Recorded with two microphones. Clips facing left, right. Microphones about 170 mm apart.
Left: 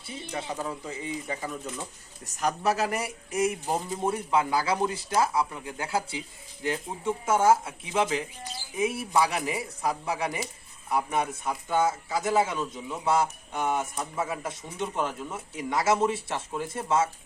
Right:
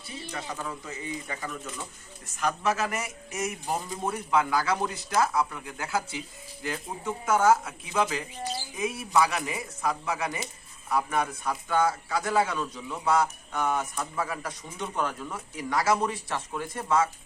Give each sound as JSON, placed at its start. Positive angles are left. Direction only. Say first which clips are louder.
{"t": 0.3, "sound": "a man's voice", "louder": "left 3 dB", "side_deg": 25}
{"t": 2.2, "sound": "a man's voice", "louder": "left 1 dB", "side_deg": 40}